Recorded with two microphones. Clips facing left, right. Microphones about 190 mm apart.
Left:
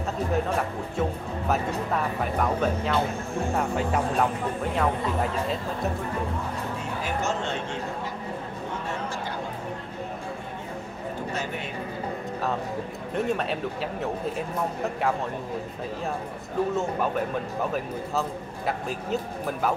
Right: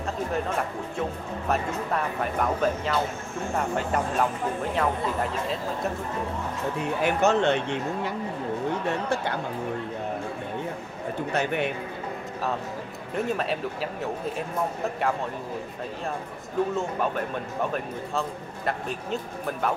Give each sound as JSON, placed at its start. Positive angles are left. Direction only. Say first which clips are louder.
{"t": 1.5, "sound": "speech", "louder": "even", "side_deg": 0}
{"t": 7.0, "sound": "speech", "louder": "right 7 dB", "side_deg": -65}
{"t": 11.3, "sound": "speech", "louder": "right 6 dB", "side_deg": -65}
{"t": 13.1, "sound": "speech", "louder": "even", "side_deg": 0}
{"t": 16.7, "sound": "speech", "louder": "left 1 dB", "side_deg": 0}
{"t": 18.7, "sound": "speech", "louder": "left 1 dB", "side_deg": 0}